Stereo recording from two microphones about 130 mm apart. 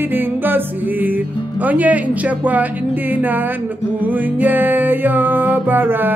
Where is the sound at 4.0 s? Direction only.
15° right (ahead or behind).